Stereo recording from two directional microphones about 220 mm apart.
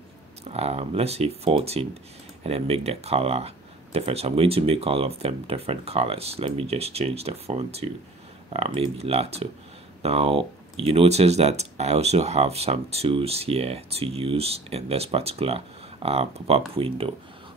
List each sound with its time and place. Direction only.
0.4 s speech: 30° right (ahead or behind)